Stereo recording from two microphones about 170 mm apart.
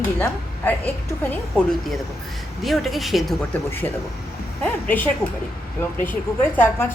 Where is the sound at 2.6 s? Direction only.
Centre (ahead or behind).